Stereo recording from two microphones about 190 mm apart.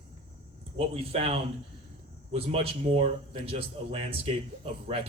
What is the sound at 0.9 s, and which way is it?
Speech, 30° right (ahead or behind).